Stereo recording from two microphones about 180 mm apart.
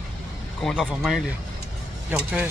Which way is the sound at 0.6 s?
Centre (ahead or behind).